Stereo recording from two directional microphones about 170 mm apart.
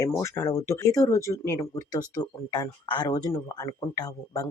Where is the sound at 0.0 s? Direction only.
15° left (ahead or behind).